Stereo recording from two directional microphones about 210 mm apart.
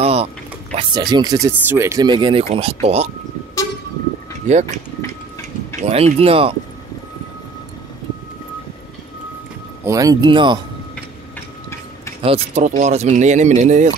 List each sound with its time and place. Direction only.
0.0 s speech: 30° right (ahead or behind)
4.5 s speech: 35° right (ahead or behind)
5.8 s speech: 30° right (ahead or behind)
9.8 s speech: 15° right (ahead or behind)
12.2 s speech: 30° right (ahead or behind)